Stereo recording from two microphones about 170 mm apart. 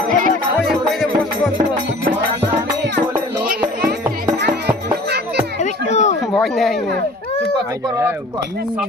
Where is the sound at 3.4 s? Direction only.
70° right (ahead or behind).